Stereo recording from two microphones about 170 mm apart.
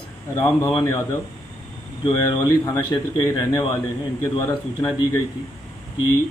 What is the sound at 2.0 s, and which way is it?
A man's voice, 25° left (ahead or behind).